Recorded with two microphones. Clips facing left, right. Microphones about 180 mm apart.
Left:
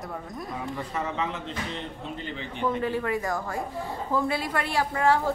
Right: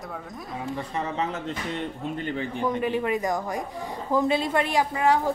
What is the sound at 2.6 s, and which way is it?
A woman's voice, 15° right (ahead or behind).